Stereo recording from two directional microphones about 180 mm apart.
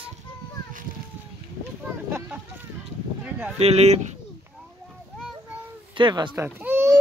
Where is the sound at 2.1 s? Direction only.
10° right (ahead or behind).